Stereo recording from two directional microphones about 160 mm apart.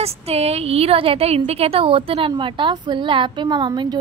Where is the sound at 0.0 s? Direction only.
40° right (ahead or behind).